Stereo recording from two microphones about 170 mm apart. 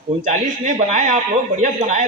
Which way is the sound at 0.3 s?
50° right (ahead or behind).